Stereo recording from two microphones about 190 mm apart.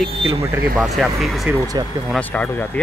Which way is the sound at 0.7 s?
Centre (ahead or behind).